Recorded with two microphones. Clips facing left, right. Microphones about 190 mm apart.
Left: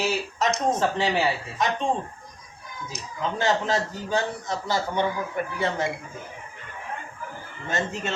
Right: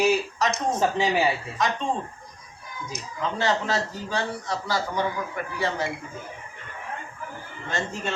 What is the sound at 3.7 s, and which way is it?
A man's voice, 20° left (ahead or behind).